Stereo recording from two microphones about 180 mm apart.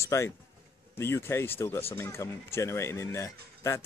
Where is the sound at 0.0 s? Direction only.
15° left (ahead or behind).